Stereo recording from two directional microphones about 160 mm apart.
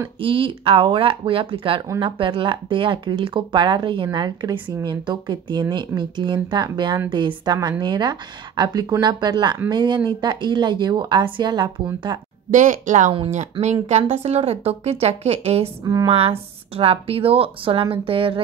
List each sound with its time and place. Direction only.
0.2 s a woman's voice: 35° right (ahead or behind)
12.4 s a woman's voice: 50° right (ahead or behind)
15.8 s a woman's voice: 20° right (ahead or behind)
16.1 s speech: 35° right (ahead or behind)